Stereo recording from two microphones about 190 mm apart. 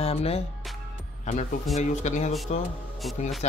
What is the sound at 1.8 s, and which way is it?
Speech, 40° left (ahead or behind).